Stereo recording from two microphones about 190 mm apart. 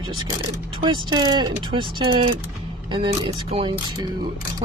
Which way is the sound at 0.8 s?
25° right (ahead or behind).